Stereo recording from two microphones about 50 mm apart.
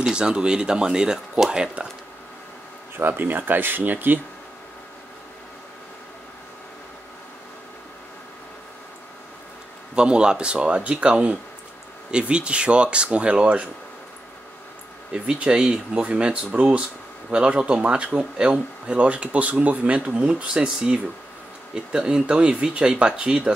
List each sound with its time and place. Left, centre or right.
0.0 s speech: centre
3.0 s speech: right
9.9 s speech: centre
15.1 s speech: right